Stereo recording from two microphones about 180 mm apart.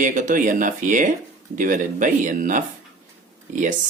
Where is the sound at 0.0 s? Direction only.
45° right (ahead or behind).